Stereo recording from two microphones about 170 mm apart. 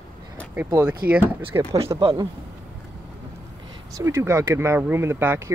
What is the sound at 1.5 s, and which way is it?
Speech, 20° right (ahead or behind).